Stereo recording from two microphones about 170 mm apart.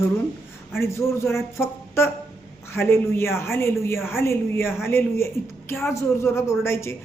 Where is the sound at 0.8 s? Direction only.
15° left (ahead or behind).